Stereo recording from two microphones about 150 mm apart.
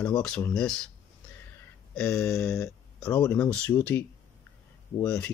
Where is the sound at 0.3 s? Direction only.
20° left (ahead or behind).